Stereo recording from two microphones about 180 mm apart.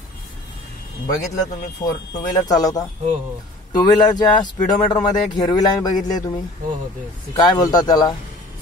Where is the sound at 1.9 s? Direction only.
20° left (ahead or behind).